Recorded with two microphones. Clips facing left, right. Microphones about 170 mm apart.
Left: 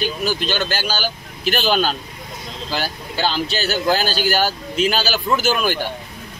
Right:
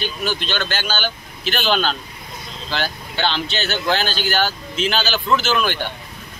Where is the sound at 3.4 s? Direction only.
35° left (ahead or behind).